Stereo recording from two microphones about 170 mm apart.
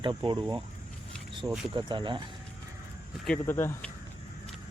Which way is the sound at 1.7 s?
25° right (ahead or behind).